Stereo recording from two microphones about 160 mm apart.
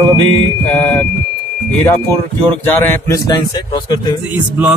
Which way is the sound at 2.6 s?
15° left (ahead or behind).